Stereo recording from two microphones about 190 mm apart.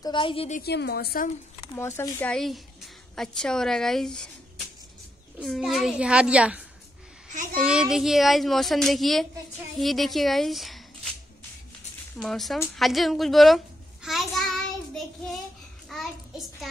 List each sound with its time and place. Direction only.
0.0 s a woman's voice: 25° left (ahead or behind)
0.6 s a woman's voice: 55° left (ahead or behind)
1.8 s a woman's voice: 10° left (ahead or behind)
5.4 s speech: centre (ahead or behind)
7.6 s speech: 5° right (ahead or behind)
12.2 s speech: centre (ahead or behind)
14.0 s child singing: centre (ahead or behind)
15.9 s child singing: centre (ahead or behind)